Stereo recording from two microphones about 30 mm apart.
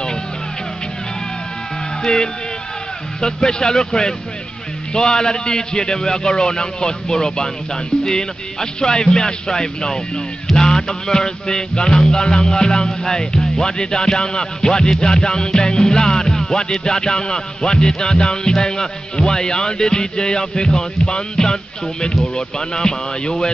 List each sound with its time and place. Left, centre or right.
3.2 s speech: left